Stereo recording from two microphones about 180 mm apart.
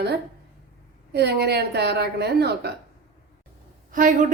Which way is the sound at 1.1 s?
65° right (ahead or behind).